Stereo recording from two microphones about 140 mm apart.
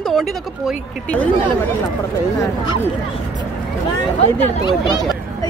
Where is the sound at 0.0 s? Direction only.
Centre (ahead or behind).